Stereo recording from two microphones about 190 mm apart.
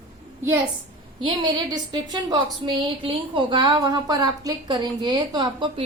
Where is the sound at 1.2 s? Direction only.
25° right (ahead or behind).